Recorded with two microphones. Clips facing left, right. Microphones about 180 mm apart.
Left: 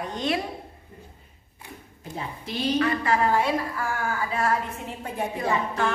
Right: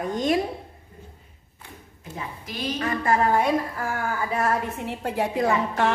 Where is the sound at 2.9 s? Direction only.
50° right (ahead or behind).